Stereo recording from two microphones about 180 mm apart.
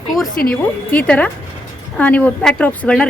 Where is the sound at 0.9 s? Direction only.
10° left (ahead or behind).